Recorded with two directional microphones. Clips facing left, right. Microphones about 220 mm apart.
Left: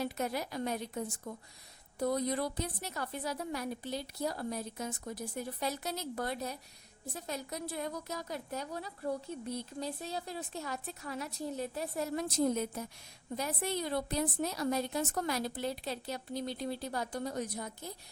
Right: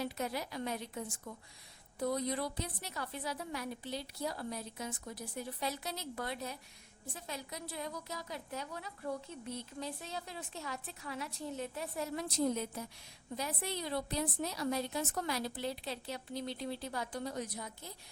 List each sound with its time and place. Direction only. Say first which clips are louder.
0.0 s a woman's voice: left 3 dB; 50° left (ahead or behind)